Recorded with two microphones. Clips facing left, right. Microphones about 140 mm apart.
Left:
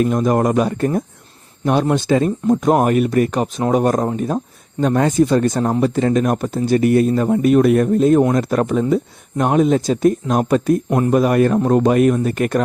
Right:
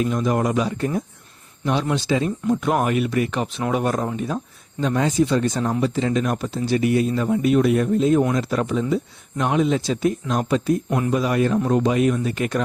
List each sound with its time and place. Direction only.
0.0 s speech: 45° left (ahead or behind)
10.8 s speech: 35° left (ahead or behind)
11.1 s speech: 50° left (ahead or behind)